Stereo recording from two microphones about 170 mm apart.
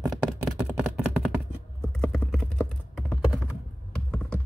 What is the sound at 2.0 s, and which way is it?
Computer keyboard, centre (ahead or behind).